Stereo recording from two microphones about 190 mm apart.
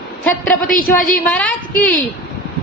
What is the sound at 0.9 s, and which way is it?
Speech, 45° left (ahead or behind).